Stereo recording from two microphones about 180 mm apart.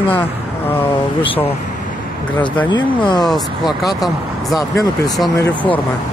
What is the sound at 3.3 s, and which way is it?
Speech, centre (ahead or behind).